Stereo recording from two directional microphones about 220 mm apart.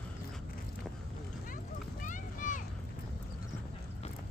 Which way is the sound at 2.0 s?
35° left (ahead or behind).